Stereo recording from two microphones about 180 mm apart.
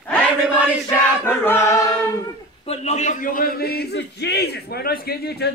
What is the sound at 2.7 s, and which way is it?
A man's voice, 35° left (ahead or behind).